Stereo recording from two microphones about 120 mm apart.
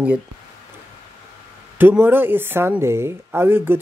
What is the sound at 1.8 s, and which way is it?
Speech, 15° right (ahead or behind).